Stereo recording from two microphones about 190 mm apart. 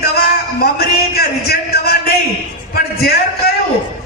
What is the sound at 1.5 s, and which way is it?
A man's voice, 55° left (ahead or behind).